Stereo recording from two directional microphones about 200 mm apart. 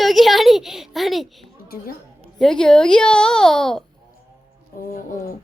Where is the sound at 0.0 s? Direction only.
Centre (ahead or behind).